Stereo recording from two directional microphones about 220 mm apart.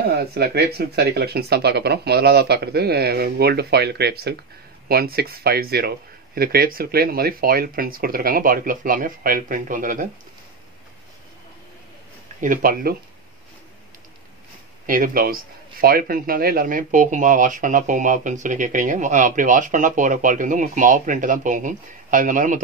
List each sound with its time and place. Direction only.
0.0 s speech: 45° right (ahead or behind)
12.4 s speech: 40° right (ahead or behind)
14.9 s speech: 40° right (ahead or behind)